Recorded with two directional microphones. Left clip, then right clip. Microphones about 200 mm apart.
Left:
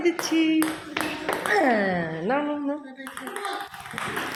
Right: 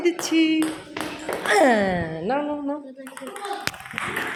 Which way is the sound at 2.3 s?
Centre (ahead or behind).